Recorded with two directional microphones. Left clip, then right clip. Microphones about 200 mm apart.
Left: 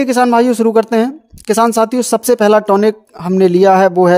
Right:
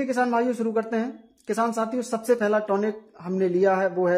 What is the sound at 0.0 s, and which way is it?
Speech, 50° left (ahead or behind).